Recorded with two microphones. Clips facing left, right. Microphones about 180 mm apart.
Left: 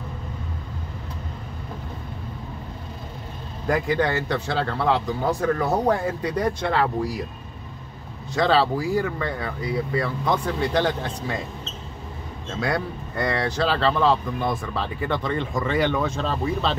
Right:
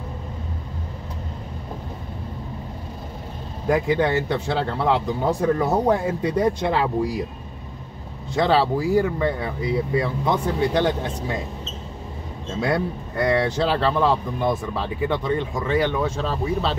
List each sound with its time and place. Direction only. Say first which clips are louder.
3.6 s speech: right 2 dB; 20° right (ahead or behind)
8.4 s speech: right 1 dB; 20° right (ahead or behind)
13.1 s speech: right 4 dB; 10° right (ahead or behind)